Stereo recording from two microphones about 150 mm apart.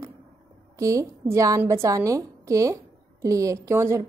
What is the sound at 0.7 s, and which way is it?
A woman's voice, 20° right (ahead or behind).